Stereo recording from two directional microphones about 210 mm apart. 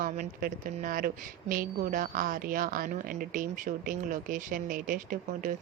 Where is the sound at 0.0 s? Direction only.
40° right (ahead or behind).